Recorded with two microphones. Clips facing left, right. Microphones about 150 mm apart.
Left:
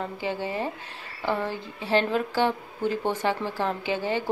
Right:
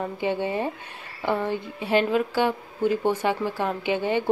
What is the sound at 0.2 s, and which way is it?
Speech, 20° right (ahead or behind).